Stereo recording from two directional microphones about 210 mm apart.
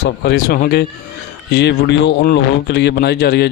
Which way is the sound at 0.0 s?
50° left (ahead or behind).